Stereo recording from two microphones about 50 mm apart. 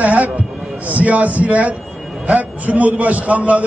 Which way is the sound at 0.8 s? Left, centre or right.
Right.